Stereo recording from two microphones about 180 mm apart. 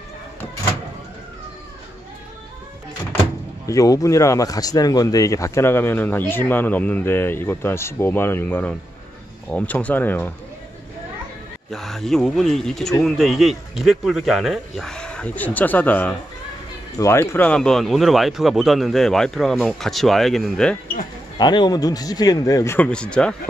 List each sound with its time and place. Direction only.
3.6 s speech: 20° left (ahead or behind)
11.7 s speech: centre (ahead or behind)
21.4 s speech: 25° left (ahead or behind); by 23.3 s 5° left (ahead or behind)